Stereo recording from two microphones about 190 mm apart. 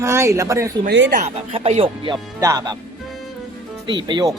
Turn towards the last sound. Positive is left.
turn(degrees=-25)  # may be behind; listen again after turning